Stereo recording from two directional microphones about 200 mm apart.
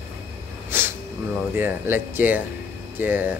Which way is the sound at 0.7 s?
10° right (ahead or behind).